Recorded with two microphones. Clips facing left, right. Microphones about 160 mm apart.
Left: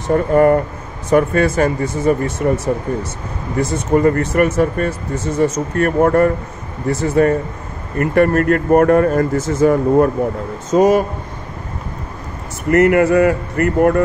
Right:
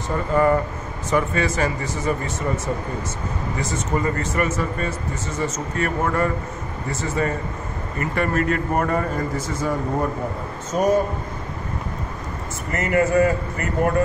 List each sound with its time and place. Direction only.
0.1 s speech: 50° left (ahead or behind); by 3.1 s 70° left (ahead or behind)
3.5 s speech: 55° left (ahead or behind)
6.9 s speech: 60° left (ahead or behind)
10.7 s speech: 90° left
12.7 s speech: 70° left (ahead or behind)